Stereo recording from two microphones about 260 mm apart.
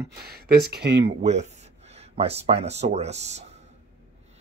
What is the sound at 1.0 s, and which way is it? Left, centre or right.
Speech, right.